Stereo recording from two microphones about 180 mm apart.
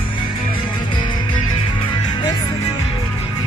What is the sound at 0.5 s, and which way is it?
Music, 25° left (ahead or behind).